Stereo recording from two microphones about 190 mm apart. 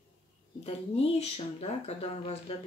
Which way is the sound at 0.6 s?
30° left (ahead or behind).